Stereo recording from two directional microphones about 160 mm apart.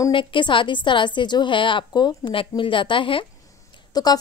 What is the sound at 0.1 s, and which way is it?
A woman's voice, 30° left (ahead or behind).